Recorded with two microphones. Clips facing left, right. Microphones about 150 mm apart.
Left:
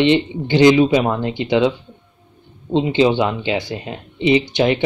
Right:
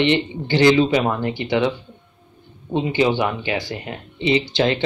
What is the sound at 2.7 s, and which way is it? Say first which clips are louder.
Speech: left 4 dB; 20° left (ahead or behind).